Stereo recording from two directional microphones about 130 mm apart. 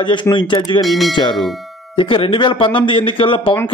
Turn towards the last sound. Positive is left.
turn(degrees=40)  # may be behind; listen again after turning